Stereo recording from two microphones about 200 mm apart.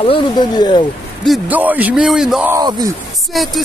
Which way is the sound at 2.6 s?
20° right (ahead or behind).